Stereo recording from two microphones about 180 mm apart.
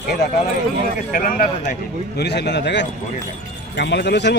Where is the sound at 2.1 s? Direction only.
70° left (ahead or behind).